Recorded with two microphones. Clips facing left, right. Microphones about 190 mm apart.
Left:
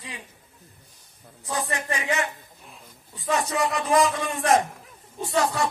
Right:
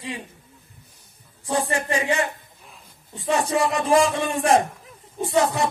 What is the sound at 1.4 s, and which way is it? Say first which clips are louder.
Speech: right 5 dB; 30° right (ahead or behind).